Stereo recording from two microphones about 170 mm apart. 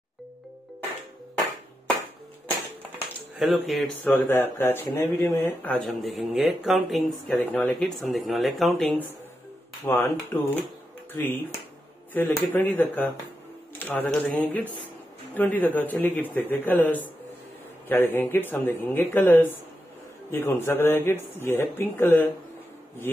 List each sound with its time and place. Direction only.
3.3 s speech: centre (ahead or behind)
7.2 s speech: 10° left (ahead or behind)